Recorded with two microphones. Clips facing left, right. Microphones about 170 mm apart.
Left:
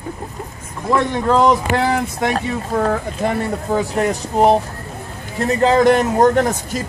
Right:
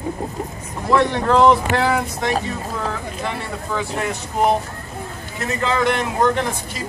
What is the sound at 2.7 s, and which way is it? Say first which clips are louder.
A man's voice: left 7 dB; 50° left (ahead or behind).